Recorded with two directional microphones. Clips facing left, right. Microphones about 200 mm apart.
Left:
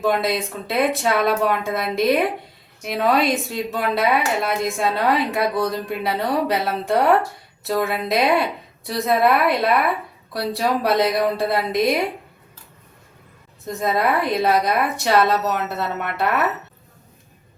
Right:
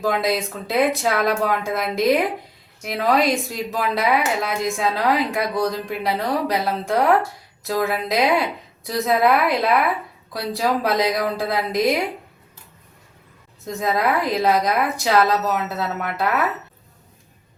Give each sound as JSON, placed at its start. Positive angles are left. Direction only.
{"t": 0.0, "sound": "a woman's voice", "side_deg": 0}
{"t": 13.7, "sound": "a woman's voice", "side_deg": 0}